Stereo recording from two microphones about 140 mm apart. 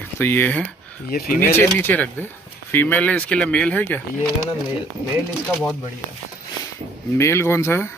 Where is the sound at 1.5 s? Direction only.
15° left (ahead or behind).